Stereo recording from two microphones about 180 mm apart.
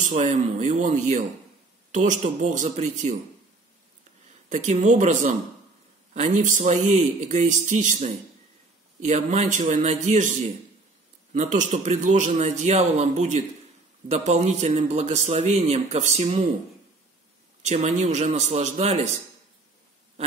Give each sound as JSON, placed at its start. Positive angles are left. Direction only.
{"t": 0.0, "sound": "a man's voice", "side_deg": -45}
{"t": 4.5, "sound": "a man's voice", "side_deg": -45}
{"t": 11.5, "sound": "a man's voice", "side_deg": -40}
{"t": 17.6, "sound": "a man's voice", "side_deg": -35}